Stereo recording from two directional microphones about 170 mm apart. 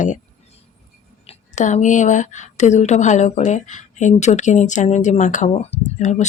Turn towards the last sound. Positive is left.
turn(degrees=45)  # may be behind; listen again after turning